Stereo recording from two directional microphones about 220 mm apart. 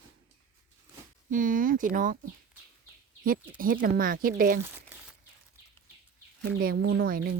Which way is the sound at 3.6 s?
40° right (ahead or behind).